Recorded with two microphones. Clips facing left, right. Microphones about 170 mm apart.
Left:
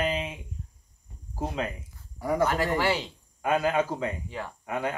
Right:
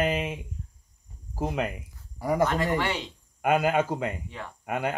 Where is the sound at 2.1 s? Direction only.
5° right (ahead or behind).